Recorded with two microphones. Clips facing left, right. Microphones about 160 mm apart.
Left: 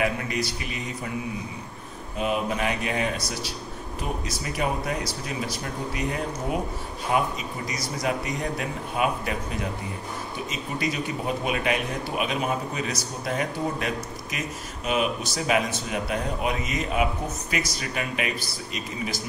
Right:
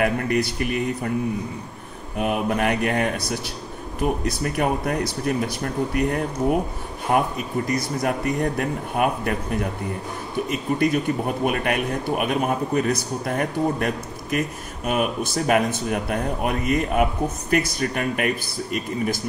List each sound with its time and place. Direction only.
0.0 s a man's voice: 55° right (ahead or behind)
2.1 s a man's voice: 60° right (ahead or behind)